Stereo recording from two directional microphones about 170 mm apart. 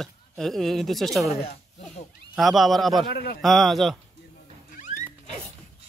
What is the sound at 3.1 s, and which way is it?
Speech, 75° left (ahead or behind).